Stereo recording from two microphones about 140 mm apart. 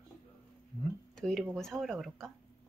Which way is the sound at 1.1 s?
5° left (ahead or behind).